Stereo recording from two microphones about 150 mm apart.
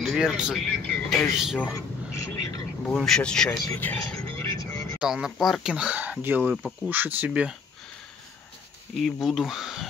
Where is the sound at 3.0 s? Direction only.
5° left (ahead or behind).